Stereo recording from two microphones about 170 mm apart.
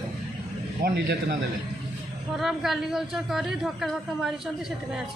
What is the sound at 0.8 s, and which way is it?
Speech, 60° right (ahead or behind).